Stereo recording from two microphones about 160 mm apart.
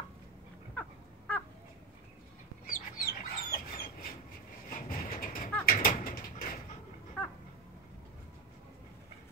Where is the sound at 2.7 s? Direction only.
65° left (ahead or behind).